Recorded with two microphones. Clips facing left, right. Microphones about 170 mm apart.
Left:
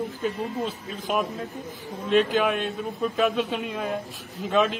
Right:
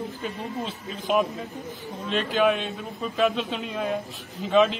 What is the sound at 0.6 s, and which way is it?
A man's voice, centre (ahead or behind).